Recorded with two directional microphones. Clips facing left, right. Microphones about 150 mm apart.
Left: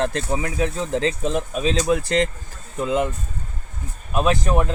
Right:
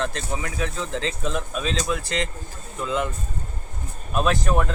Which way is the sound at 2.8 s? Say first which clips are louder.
Left 4 dB; 35° left (ahead or behind).